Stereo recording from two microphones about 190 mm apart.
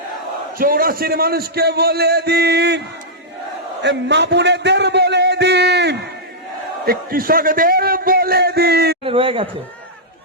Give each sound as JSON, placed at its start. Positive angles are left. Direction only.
{"t": 0.6, "sound": "a man's voice", "side_deg": -50}
{"t": 3.8, "sound": "a sound", "side_deg": -65}
{"t": 6.8, "sound": "a man's voice", "side_deg": -50}
{"t": 9.0, "sound": "speech", "side_deg": -30}